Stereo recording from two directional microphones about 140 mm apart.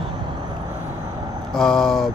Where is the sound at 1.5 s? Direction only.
Centre (ahead or behind).